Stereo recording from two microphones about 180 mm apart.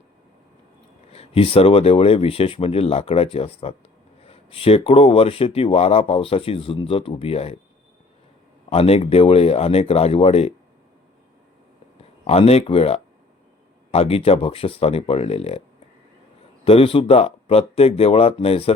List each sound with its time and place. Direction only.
1.1 s speech: 35° left (ahead or behind)
8.7 s speech: 35° left (ahead or behind)
12.2 s speech: 35° left (ahead or behind)
16.6 s speech: 30° left (ahead or behind)